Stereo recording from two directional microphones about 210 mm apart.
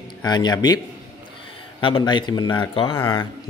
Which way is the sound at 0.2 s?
20° left (ahead or behind).